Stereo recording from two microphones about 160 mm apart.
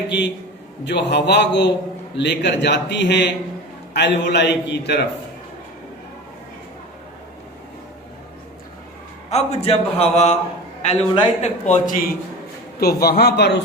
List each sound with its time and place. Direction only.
0.1 s a man's voice: 90° left
9.3 s a man's voice: 40° left (ahead or behind); by 12.1 s 60° left (ahead or behind)
12.8 s a man's voice: 75° left (ahead or behind); by 13.6 s 90° left